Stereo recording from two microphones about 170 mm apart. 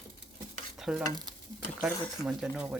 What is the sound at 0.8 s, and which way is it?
Stir, 5° right (ahead or behind).